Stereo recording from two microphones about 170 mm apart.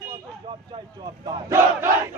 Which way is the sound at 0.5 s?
25° right (ahead or behind).